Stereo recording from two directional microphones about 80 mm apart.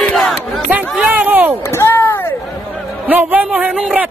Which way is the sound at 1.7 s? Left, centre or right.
Left.